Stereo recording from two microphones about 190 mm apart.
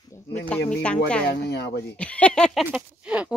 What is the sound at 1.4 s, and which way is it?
Speech, 60° left (ahead or behind).